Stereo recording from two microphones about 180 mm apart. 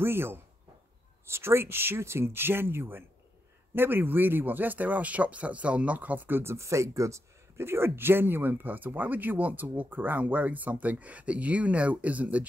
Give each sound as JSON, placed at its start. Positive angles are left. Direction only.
{"t": 0.0, "sound": "speech", "side_deg": -15}